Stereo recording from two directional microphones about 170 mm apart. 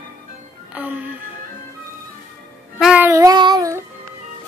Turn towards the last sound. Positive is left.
turn(degrees=-20)  # may be behind; listen again after turning